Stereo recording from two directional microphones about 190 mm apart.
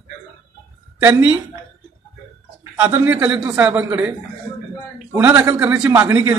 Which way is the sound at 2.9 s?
10° right (ahead or behind).